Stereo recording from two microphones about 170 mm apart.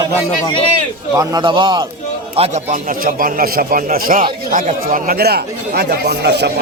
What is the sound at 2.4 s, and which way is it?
A man's voice, 40° right (ahead or behind).